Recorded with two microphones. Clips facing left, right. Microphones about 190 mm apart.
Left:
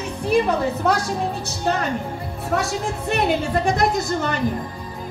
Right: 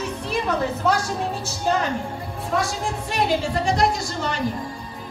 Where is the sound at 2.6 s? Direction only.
60° left (ahead or behind).